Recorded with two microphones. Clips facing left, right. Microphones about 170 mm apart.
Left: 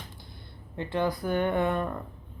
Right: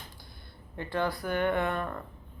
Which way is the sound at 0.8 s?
20° left (ahead or behind).